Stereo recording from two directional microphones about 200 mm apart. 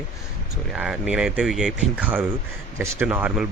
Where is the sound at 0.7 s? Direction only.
5° right (ahead or behind).